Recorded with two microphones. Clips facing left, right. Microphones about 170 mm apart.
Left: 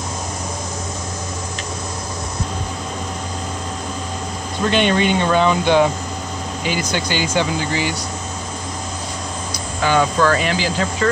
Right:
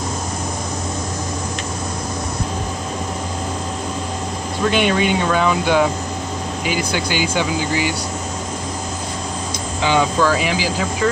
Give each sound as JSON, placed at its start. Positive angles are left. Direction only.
{"t": 4.6, "sound": "speech", "side_deg": -10}
{"t": 9.8, "sound": "speech", "side_deg": -15}